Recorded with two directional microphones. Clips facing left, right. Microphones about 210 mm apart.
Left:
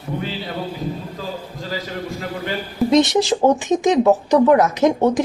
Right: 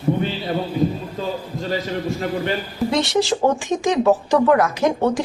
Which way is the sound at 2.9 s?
20° left (ahead or behind).